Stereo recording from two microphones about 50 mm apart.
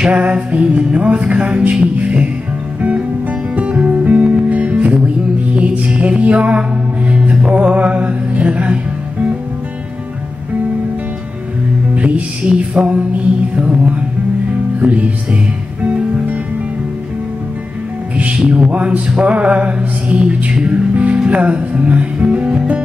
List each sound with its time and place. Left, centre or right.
0.0 s music: right
3.5 s music: right
11.9 s music: right
18.1 s music: right
21.3 s speech: right